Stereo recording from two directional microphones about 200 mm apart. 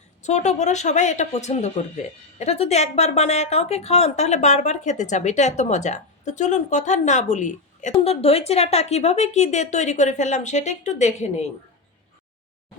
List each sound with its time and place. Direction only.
0.2 s a woman's voice: 35° left (ahead or behind)